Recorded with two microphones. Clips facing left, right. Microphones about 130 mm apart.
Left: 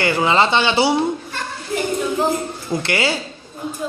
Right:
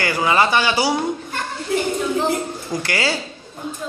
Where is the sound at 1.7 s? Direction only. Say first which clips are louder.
Right 2 dB; 80° right.